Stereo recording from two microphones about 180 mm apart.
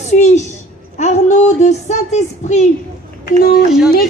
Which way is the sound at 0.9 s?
40° left (ahead or behind).